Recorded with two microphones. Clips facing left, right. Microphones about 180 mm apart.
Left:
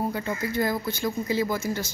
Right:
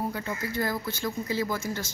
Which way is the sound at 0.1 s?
20° left (ahead or behind).